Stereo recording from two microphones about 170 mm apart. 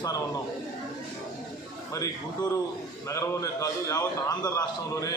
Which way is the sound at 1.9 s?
20° left (ahead or behind).